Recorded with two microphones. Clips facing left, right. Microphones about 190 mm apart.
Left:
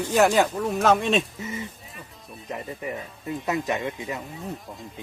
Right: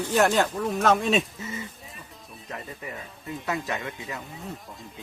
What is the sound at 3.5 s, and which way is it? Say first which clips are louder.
Speech: left 4 dB; 20° left (ahead or behind).